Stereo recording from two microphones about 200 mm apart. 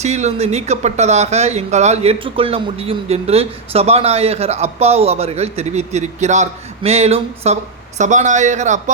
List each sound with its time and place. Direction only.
0.0 s speech: 35° right (ahead or behind)